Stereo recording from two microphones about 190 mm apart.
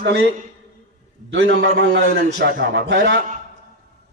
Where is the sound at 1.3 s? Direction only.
75° right (ahead or behind); by 3.0 s 60° right (ahead or behind).